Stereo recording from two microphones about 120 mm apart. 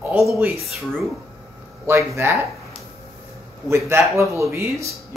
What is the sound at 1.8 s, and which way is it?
Speech, 20° right (ahead or behind).